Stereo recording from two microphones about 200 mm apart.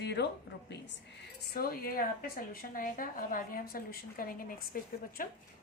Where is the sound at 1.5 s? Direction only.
50° left (ahead or behind).